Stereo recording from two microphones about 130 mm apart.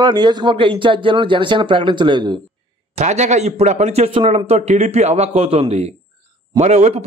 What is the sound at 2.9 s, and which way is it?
A man's voice, 60° right (ahead or behind).